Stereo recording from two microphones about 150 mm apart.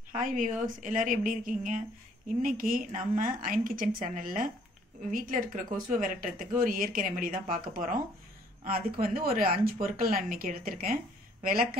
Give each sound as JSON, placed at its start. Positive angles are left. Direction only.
{"t": 0.1, "sound": "speech", "side_deg": -60}
{"t": 9.0, "sound": "speech", "side_deg": -75}